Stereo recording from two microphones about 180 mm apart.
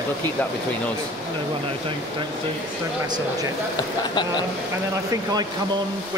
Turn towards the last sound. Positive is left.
turn(degrees=-20)  # may be behind; listen again after turning